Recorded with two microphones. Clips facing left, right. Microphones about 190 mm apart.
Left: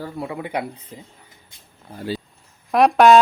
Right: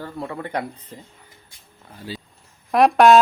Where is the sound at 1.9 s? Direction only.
50° left (ahead or behind).